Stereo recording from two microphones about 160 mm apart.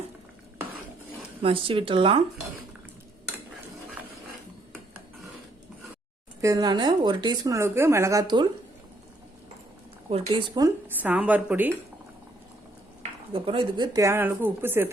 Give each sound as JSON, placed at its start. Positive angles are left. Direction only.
{"t": 1.4, "sound": "speech", "side_deg": -35}
{"t": 6.4, "sound": "speech", "side_deg": -20}
{"t": 10.1, "sound": "speech", "side_deg": -35}
{"t": 10.8, "sound": "a woman's voice", "side_deg": -10}
{"t": 13.0, "sound": "speech", "side_deg": -35}